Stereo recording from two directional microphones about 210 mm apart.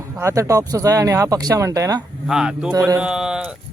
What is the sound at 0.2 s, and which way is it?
Speech, 15° right (ahead or behind).